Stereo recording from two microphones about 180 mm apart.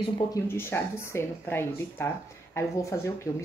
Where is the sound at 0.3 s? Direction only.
10° left (ahead or behind).